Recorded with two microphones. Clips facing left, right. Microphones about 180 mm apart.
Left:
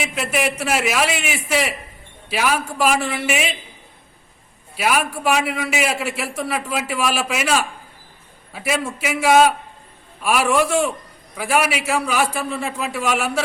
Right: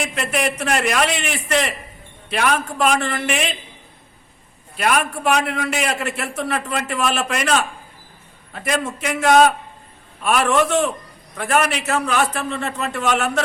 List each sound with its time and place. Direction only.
0.0 s a man's voice: 5° left (ahead or behind)
4.8 s a man's voice: 5° left (ahead or behind)